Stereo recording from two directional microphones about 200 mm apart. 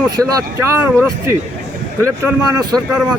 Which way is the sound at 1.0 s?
15° right (ahead or behind).